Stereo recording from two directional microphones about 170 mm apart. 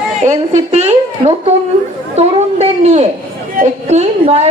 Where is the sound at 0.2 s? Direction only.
45° right (ahead or behind).